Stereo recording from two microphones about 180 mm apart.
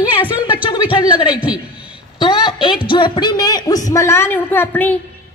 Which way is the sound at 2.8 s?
25° left (ahead or behind).